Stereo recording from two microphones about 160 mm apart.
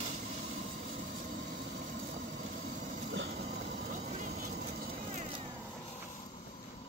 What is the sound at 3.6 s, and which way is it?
Vehicle, 45° right (ahead or behind).